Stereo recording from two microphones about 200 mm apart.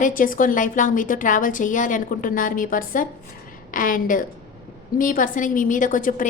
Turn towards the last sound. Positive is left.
turn(degrees=40)  # may be behind; listen again after turning